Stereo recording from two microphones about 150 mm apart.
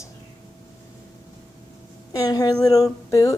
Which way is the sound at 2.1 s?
25° left (ahead or behind).